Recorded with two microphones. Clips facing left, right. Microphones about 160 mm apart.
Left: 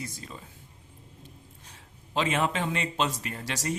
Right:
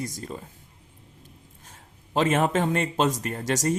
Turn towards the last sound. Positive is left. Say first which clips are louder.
# right 7 dB
turn(degrees=-45)  # may be behind; listen again after turning